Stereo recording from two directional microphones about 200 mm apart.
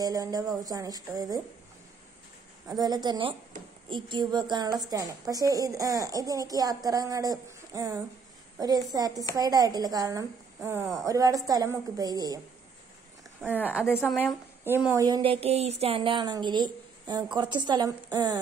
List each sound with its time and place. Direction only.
0.0 s a woman's voice: 20° right (ahead or behind)
2.7 s a woman's voice: 20° right (ahead or behind)
13.7 s a woman's voice: 5° right (ahead or behind)
14.9 s speech: 20° right (ahead or behind)